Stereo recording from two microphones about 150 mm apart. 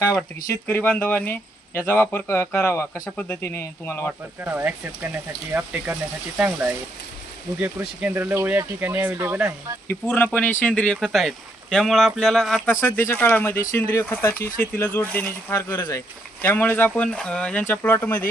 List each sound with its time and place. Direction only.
0.5 s speech: 15° left (ahead or behind)
4.4 s speech: 15° right (ahead or behind)
9.9 s speech: 15° left (ahead or behind)
12.6 s speech: 20° left (ahead or behind)